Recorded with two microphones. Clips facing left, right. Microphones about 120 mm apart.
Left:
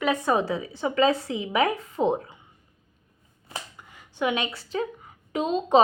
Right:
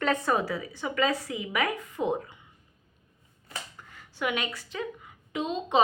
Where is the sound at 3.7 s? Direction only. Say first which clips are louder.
Left 3 dB; 15° left (ahead or behind); by 5.8 s 40° left (ahead or behind).